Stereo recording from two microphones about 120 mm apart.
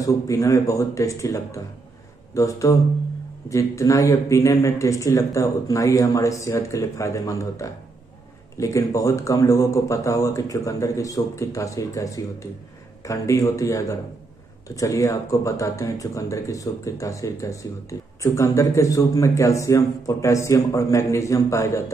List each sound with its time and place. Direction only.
0.0 s speech: 25° left (ahead or behind)